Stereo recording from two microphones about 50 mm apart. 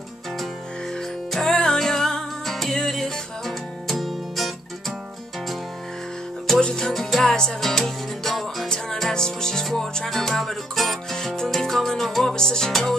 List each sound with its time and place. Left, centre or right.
1.3 s music: centre
6.6 s music: centre
6.9 s music: centre
8.6 s music: centre